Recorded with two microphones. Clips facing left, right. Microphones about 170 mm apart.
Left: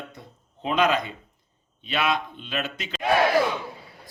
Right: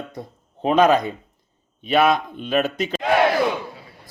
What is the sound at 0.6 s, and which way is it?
A man's voice, 45° right (ahead or behind).